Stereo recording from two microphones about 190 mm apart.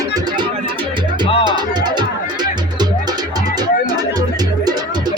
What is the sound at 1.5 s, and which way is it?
Music, 25° right (ahead or behind).